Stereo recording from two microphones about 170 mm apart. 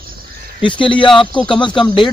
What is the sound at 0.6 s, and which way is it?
Speech, 30° left (ahead or behind).